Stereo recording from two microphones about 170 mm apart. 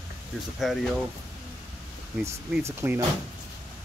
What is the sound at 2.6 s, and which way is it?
Speech, 15° right (ahead or behind).